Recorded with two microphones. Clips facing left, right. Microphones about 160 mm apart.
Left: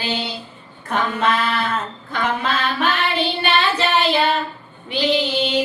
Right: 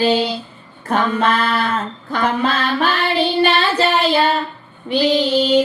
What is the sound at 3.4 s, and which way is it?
Child singing, 35° right (ahead or behind).